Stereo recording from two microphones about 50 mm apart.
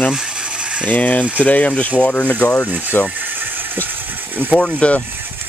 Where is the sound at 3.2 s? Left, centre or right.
Right.